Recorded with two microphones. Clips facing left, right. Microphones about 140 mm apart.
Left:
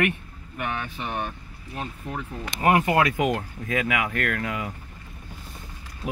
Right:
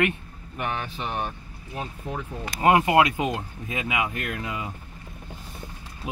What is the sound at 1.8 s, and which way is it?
Speech, 15° right (ahead or behind).